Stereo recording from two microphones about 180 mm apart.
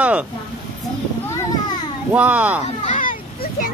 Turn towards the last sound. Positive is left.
turn(degrees=45)  # may be behind; listen again after turning